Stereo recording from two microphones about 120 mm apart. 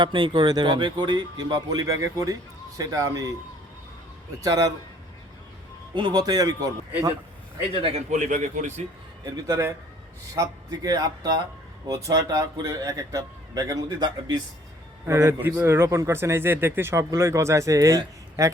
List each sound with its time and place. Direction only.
0.0 s speech: 40° right (ahead or behind)
4.4 s a man's voice: 30° right (ahead or behind)
5.9 s speech: 40° right (ahead or behind)
7.7 s speech: 50° right (ahead or behind); by 8.8 s 90° right
9.2 s a man's voice: 30° right (ahead or behind)